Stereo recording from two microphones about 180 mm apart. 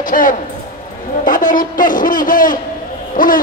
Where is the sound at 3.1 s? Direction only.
50° left (ahead or behind).